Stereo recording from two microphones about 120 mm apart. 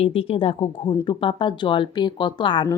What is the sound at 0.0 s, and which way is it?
Speech, 50° left (ahead or behind).